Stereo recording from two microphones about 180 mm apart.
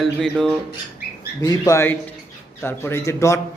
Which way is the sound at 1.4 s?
20° left (ahead or behind).